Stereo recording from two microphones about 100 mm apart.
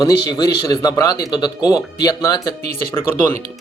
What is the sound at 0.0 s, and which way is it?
A man's voice, 45° left (ahead or behind).